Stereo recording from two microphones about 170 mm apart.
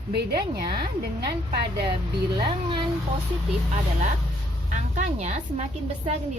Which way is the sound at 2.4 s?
25° right (ahead or behind).